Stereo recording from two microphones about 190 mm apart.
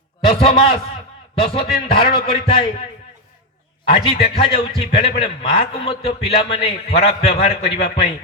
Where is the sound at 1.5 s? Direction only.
30° left (ahead or behind).